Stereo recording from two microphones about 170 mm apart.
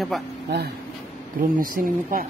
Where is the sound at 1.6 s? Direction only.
55° right (ahead or behind).